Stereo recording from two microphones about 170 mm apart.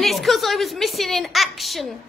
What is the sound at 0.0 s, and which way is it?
A woman's voice, centre (ahead or behind).